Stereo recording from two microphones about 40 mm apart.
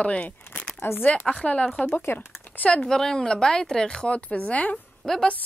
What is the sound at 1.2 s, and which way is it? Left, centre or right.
Speech, left.